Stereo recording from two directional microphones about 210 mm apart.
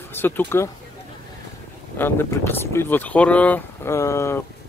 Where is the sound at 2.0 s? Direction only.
10° left (ahead or behind).